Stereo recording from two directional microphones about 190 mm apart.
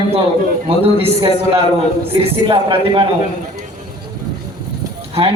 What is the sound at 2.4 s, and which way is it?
Speech, 25° right (ahead or behind).